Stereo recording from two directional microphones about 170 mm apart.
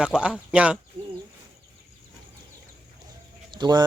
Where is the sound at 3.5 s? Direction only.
25° right (ahead or behind).